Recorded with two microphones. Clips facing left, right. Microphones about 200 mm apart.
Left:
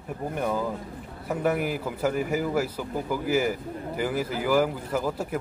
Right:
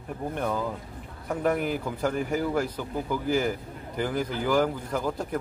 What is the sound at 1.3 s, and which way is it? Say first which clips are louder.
A man's voice: even; 5° left (ahead or behind).